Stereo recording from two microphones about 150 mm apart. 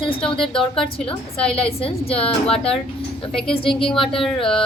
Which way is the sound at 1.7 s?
40° left (ahead or behind).